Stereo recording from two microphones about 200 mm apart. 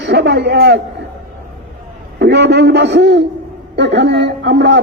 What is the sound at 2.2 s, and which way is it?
Speech, 60° right (ahead or behind).